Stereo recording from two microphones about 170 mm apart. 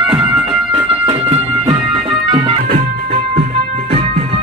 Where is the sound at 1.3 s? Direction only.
35° right (ahead or behind).